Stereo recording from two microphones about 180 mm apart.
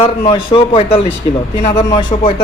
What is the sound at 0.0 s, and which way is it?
Speech, 30° left (ahead or behind).